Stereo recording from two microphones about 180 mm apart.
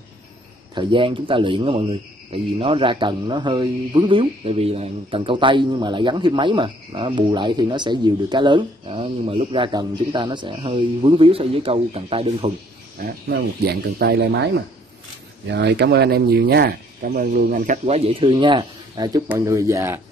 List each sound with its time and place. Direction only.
0.7 s speech: 30° right (ahead or behind)
13.0 s speech: 60° right (ahead or behind); by 20.0 s 15° right (ahead or behind)